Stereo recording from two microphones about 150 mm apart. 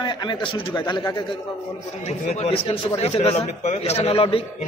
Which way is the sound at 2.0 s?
50° left (ahead or behind).